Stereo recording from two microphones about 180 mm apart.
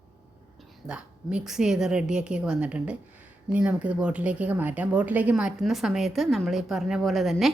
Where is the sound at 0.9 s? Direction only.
5° right (ahead or behind).